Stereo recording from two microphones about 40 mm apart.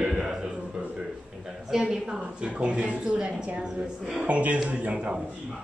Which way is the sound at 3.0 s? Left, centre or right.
Right.